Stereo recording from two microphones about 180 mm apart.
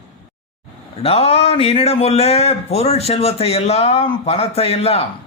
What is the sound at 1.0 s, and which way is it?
A man's voice, 35° left (ahead or behind).